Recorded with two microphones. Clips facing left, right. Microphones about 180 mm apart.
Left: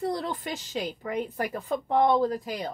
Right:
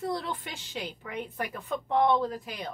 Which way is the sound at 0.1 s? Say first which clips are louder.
Left 3 dB; 40° left (ahead or behind).